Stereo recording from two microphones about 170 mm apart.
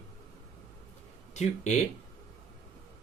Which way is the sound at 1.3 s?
40° left (ahead or behind).